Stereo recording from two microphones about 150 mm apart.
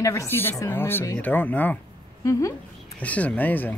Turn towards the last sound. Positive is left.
turn(degrees=10)  # may be behind; listen again after turning